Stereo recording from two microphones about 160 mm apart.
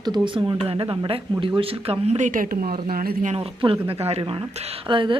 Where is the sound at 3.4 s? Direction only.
35° right (ahead or behind).